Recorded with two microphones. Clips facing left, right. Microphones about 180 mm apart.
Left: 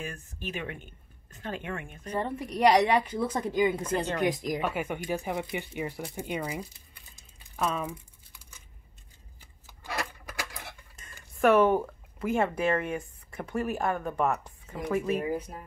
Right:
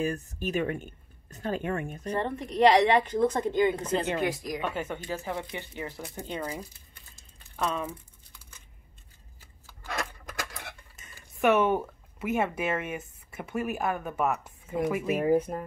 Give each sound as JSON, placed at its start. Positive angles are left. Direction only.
{"t": 0.0, "sound": "speech", "side_deg": -40}
{"t": 2.1, "sound": "speech", "side_deg": 10}
{"t": 4.2, "sound": "speech", "side_deg": 20}
{"t": 4.6, "sound": "speech", "side_deg": 10}
{"t": 7.8, "sound": "crumpling", "side_deg": 10}
{"t": 9.7, "sound": "a sound", "side_deg": 10}
{"t": 11.0, "sound": "speech", "side_deg": 0}
{"t": 15.1, "sound": "speech", "side_deg": -50}